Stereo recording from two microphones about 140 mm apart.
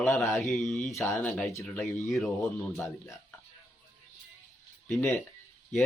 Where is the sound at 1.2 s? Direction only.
5° left (ahead or behind).